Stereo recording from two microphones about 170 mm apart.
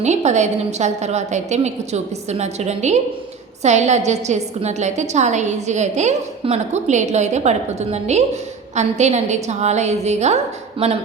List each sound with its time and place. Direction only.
0.0 s a woman's voice: 40° right (ahead or behind)